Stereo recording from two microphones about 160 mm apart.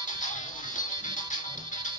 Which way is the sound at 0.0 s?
50° left (ahead or behind).